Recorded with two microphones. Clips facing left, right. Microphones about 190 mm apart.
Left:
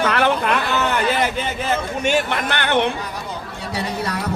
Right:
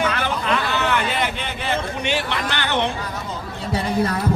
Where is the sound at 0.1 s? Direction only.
60° left (ahead or behind).